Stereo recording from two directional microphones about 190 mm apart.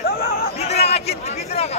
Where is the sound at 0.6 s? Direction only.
35° left (ahead or behind).